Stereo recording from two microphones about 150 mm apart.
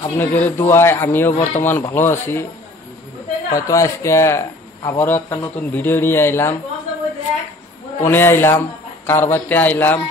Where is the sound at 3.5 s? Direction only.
20° left (ahead or behind).